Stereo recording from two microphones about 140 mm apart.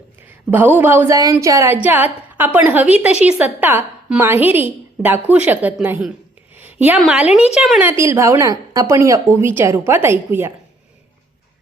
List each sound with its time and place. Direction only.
0.3 s a woman's voice: 15° right (ahead or behind)
6.6 s a sound: 15° right (ahead or behind)
7.1 s a woman's voice: 10° right (ahead or behind)
7.9 s a woman's voice: 20° right (ahead or behind)